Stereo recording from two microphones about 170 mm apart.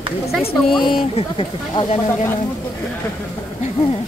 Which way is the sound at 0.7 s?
30° left (ahead or behind).